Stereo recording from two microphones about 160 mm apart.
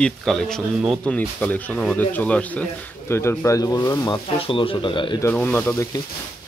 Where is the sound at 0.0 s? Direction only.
5° left (ahead or behind); by 4.2 s 20° left (ahead or behind).